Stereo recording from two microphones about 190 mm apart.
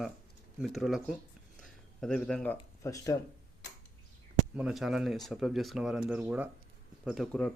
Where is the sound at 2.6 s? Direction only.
15° left (ahead or behind).